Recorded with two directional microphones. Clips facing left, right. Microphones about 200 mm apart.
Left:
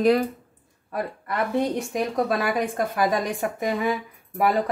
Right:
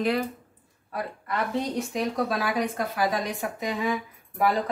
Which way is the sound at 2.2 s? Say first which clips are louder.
Left 3 dB; 50° left (ahead or behind).